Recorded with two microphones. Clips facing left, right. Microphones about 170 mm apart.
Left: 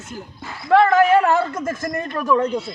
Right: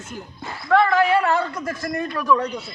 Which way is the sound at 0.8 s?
45° left (ahead or behind).